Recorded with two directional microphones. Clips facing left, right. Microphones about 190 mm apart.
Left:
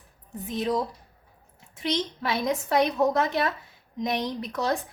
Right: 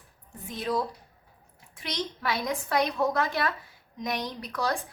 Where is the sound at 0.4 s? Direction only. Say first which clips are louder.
Left 3 dB; 20° left (ahead or behind).